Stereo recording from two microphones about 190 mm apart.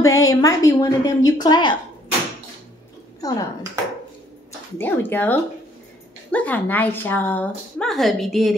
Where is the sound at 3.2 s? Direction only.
20° left (ahead or behind).